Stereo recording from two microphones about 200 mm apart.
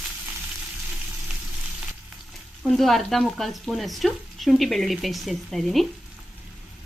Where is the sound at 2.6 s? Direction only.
Centre (ahead or behind).